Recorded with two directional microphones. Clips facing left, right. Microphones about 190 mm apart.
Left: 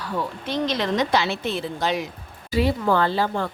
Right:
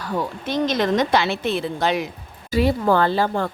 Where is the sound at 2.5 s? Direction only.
45° right (ahead or behind).